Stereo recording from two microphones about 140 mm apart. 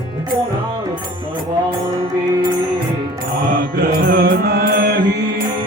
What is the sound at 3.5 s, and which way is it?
Music, 90° right.